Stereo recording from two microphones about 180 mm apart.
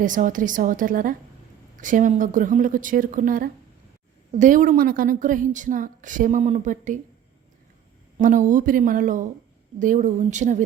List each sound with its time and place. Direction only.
0.0 s a woman's voice: 45° right (ahead or behind)
8.2 s a woman's voice: 45° right (ahead or behind)